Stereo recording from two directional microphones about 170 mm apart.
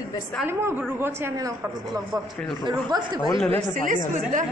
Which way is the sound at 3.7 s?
50° right (ahead or behind).